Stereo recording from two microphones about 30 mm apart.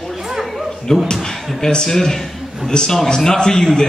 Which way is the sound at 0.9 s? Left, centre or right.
Centre.